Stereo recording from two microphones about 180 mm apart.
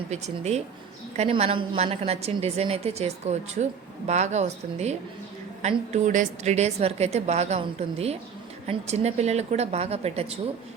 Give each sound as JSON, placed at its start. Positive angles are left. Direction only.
{"t": 0.1, "sound": "a woman's voice", "side_deg": -35}